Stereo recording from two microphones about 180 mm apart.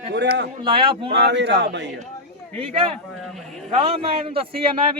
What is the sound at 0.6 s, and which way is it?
Speech, 30° right (ahead or behind).